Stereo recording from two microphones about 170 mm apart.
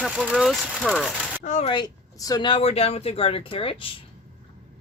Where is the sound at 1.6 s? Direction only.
25° left (ahead or behind).